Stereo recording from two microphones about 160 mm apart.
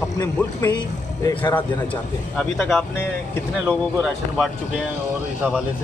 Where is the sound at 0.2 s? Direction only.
20° left (ahead or behind).